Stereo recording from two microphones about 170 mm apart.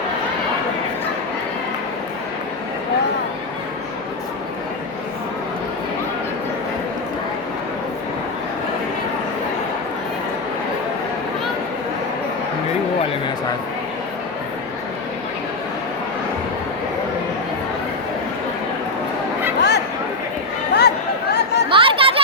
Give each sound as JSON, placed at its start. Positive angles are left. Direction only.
{"t": 19.5, "sound": "a sound", "side_deg": 80}
{"t": 20.7, "sound": "chatter", "side_deg": 75}
{"t": 21.7, "sound": "chatter", "side_deg": -30}